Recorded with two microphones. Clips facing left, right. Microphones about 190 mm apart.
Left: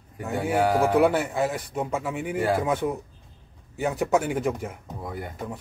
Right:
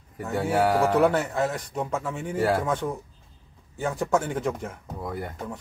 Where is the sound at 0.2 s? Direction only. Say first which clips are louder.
Even; centre (ahead or behind).